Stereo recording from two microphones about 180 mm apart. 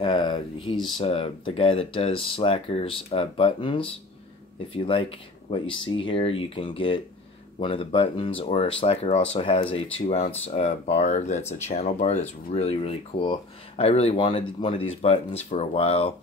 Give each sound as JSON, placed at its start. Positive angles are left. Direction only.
{"t": 0.0, "sound": "speech", "side_deg": 25}